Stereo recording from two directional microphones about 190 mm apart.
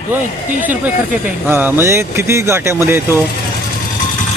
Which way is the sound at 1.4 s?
10° right (ahead or behind).